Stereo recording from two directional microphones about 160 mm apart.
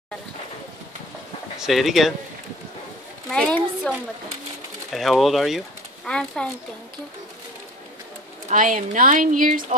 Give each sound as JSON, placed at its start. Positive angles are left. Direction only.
{"t": 1.6, "sound": "speech", "side_deg": 0}
{"t": 3.3, "sound": "a sound", "side_deg": 5}
{"t": 4.9, "sound": "speech", "side_deg": 0}
{"t": 8.5, "sound": "speech", "side_deg": -55}